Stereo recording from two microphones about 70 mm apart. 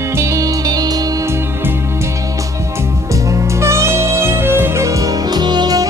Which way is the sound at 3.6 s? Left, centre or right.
Right.